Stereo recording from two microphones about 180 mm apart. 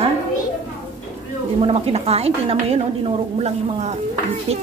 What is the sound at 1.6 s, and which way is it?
A woman's voice, 35° right (ahead or behind).